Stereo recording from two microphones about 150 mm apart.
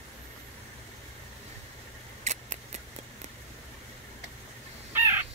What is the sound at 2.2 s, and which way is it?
Scissors, 50° right (ahead or behind).